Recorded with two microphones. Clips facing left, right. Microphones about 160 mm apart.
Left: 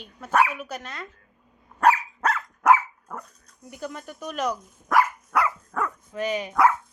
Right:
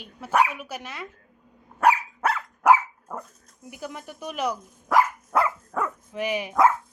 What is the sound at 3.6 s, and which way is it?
Speech, 10° right (ahead or behind).